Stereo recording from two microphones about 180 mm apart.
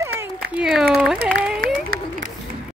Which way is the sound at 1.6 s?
50° right (ahead or behind).